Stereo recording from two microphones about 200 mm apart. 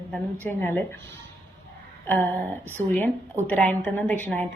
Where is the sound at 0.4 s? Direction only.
10° left (ahead or behind).